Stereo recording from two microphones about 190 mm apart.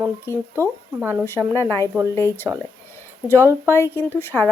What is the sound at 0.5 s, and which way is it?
Speech, 10° right (ahead or behind).